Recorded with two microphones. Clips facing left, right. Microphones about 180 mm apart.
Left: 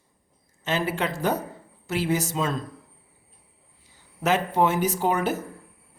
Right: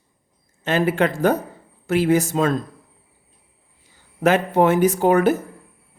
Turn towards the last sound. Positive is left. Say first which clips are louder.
# right 8 dB
turn(degrees=-55)  # may be behind; listen again after turning